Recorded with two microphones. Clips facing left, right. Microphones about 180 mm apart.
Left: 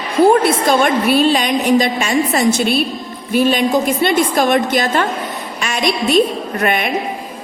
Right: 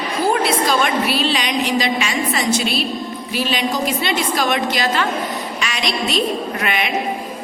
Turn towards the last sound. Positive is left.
turn(degrees=50)  # may be behind; listen again after turning